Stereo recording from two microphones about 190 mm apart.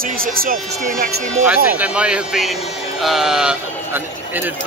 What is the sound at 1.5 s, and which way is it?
Speech, 5° right (ahead or behind).